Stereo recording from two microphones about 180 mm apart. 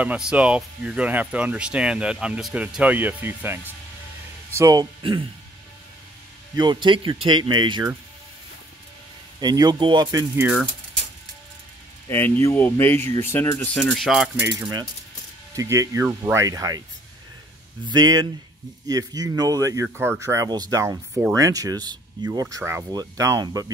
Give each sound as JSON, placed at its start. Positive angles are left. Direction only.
{"t": 0.0, "sound": "speech", "side_deg": -5}
{"t": 6.5, "sound": "speech", "side_deg": -25}
{"t": 9.4, "sound": "speech", "side_deg": -20}
{"t": 12.1, "sound": "speech", "side_deg": 15}
{"t": 13.9, "sound": "speech", "side_deg": 0}
{"t": 14.6, "sound": "speech", "side_deg": -25}
{"t": 17.8, "sound": "speech", "side_deg": -20}